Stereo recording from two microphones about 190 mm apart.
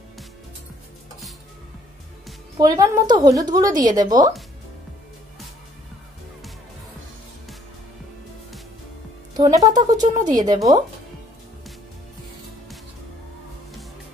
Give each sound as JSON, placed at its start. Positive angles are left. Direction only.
{"t": 2.5, "sound": "a woman's voice", "side_deg": -20}
{"t": 9.4, "sound": "a woman's voice", "side_deg": -20}